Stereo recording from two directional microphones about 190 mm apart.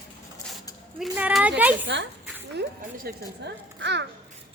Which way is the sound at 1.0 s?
5° right (ahead or behind).